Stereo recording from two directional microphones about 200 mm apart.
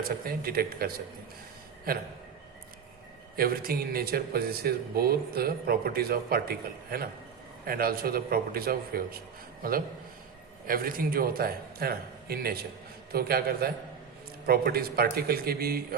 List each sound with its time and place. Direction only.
0.0 s speech: 50° right (ahead or behind)
3.3 s speech: 45° right (ahead or behind)